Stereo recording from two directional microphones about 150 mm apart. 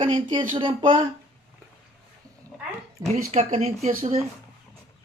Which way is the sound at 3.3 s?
45° right (ahead or behind).